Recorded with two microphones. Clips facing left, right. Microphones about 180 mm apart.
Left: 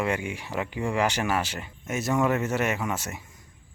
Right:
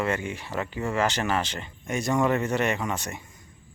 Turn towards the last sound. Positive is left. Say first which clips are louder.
# right 1 dB
turn(degrees=5)  # may be behind; listen again after turning